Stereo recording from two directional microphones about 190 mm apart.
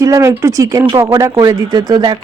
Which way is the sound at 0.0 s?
15° right (ahead or behind).